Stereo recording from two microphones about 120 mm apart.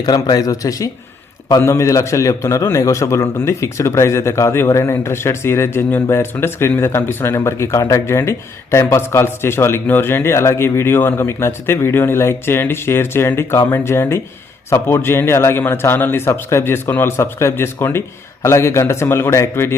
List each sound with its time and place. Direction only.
0.0 s a man's voice: 35° left (ahead or behind)